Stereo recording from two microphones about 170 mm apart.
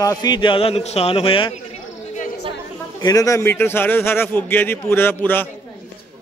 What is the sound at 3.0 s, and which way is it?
A man's voice, 20° left (ahead or behind).